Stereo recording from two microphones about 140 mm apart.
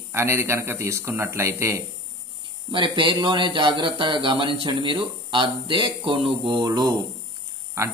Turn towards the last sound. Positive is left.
turn(degrees=-20)  # may be behind; listen again after turning